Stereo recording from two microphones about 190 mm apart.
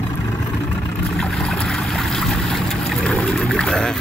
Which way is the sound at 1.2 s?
Centre (ahead or behind).